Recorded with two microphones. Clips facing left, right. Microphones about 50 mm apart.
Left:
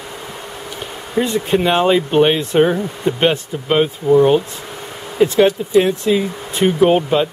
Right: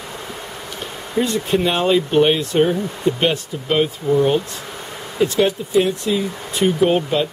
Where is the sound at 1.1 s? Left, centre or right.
Centre.